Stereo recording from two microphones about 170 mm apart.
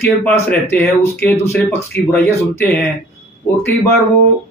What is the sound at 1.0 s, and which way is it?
Speech, 15° left (ahead or behind).